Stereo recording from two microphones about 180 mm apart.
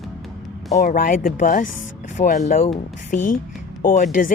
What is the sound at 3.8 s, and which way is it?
Speech, 50° left (ahead or behind).